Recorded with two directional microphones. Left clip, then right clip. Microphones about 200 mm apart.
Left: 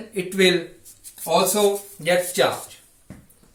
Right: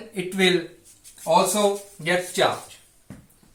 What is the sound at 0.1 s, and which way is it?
Speech, 10° right (ahead or behind).